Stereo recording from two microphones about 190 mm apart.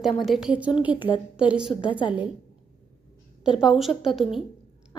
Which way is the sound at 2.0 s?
25° left (ahead or behind).